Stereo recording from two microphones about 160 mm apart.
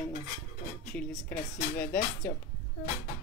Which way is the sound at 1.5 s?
60° left (ahead or behind).